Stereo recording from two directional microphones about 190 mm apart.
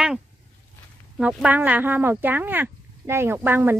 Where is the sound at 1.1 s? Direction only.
5° right (ahead or behind).